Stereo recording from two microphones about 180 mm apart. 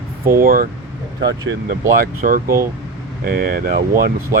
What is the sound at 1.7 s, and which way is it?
Speech, 50° right (ahead or behind).